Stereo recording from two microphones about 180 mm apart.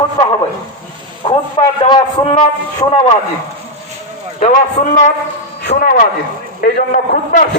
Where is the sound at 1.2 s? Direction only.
25° left (ahead or behind).